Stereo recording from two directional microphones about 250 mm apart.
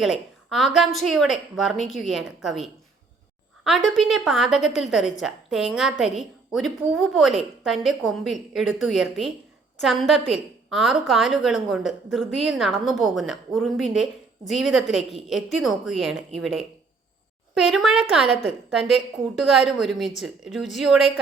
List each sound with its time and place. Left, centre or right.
0.0 s a woman's voice: centre